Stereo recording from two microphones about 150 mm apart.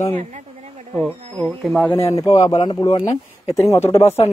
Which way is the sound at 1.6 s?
5° left (ahead or behind).